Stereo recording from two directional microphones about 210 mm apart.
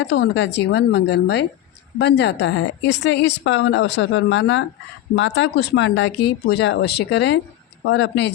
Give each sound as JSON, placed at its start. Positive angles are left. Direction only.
{"t": 0.0, "sound": "a woman's voice", "side_deg": 55}